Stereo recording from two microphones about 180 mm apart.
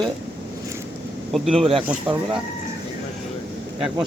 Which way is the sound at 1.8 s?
5° right (ahead or behind).